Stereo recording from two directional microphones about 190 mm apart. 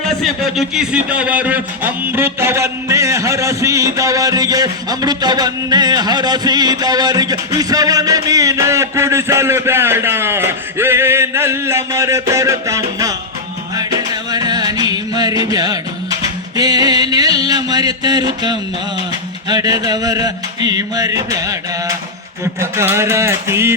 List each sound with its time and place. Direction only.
0.0 s a man's voice: centre (ahead or behind); by 13.1 s 15° right (ahead or behind)
13.7 s music: 20° right (ahead or behind)
22.6 s a man's voice: 15° right (ahead or behind)